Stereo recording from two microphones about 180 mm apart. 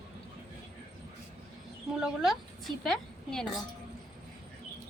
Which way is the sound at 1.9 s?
5° right (ahead or behind).